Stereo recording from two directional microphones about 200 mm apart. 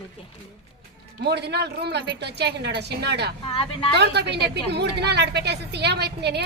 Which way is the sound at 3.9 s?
55° right (ahead or behind).